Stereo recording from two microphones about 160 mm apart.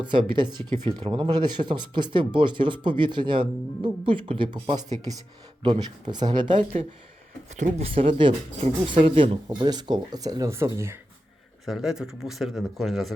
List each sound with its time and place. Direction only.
0.0 s speech: 30° right (ahead or behind)
5.6 s speech: 30° right (ahead or behind)
7.5 s speech: 45° right (ahead or behind); by 10.9 s 15° right (ahead or behind)
11.6 s speech: centre (ahead or behind)